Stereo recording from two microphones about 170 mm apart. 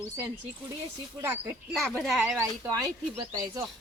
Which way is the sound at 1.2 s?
15° right (ahead or behind).